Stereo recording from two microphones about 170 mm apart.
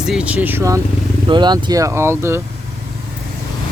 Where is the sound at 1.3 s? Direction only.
25° right (ahead or behind).